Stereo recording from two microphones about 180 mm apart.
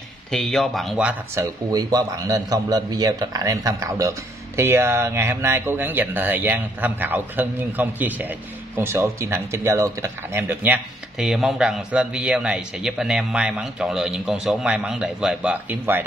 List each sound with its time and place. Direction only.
0.3 s speech: centre (ahead or behind)